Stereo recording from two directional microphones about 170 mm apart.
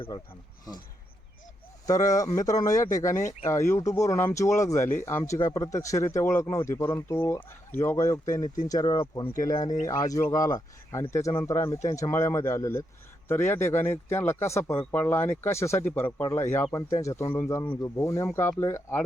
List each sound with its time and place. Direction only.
1.9 s speech: 20° left (ahead or behind)